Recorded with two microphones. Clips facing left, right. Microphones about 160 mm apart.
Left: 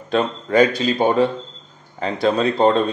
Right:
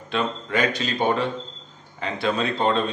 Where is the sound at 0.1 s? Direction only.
40° left (ahead or behind).